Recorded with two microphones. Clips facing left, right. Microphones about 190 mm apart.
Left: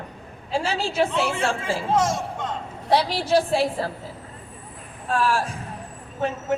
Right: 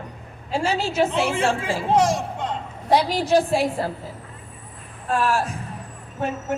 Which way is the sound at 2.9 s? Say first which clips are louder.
Right 2 dB; 10° right (ahead or behind).